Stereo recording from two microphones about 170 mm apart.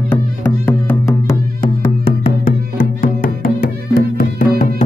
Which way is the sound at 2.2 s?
50° left (ahead or behind).